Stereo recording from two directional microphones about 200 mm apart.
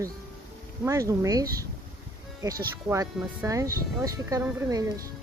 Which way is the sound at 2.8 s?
15° right (ahead or behind).